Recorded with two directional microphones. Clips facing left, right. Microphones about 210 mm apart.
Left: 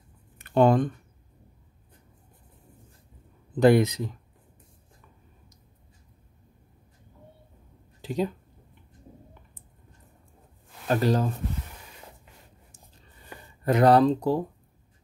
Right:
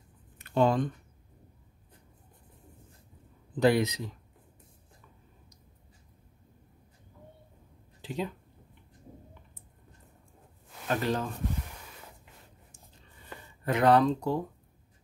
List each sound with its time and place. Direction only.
0.4 s speech: 50° left (ahead or behind)
3.5 s speech: 50° left (ahead or behind)
8.0 s a sound: 40° left (ahead or behind)
10.9 s speech: 35° left (ahead or behind)
13.7 s speech: 40° left (ahead or behind)